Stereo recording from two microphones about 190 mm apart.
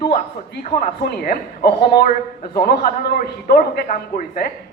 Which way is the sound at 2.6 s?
50° left (ahead or behind).